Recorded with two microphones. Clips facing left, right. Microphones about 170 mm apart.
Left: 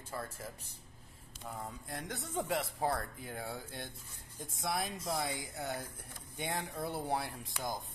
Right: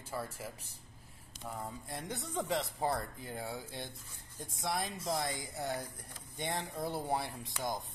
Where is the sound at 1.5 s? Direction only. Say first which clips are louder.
Right 1 dB; centre (ahead or behind).